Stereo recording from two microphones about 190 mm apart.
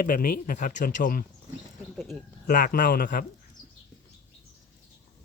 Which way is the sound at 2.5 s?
45° left (ahead or behind).